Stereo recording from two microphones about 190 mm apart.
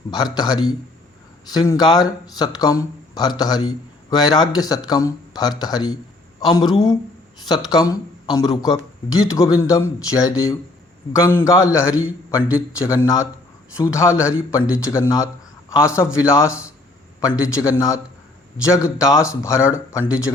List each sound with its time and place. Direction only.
0.1 s speech: 20° left (ahead or behind)
14.1 s a man's voice: 5° right (ahead or behind)
14.8 s speech: 15° left (ahead or behind)
20.0 s a man's voice: 5° right (ahead or behind)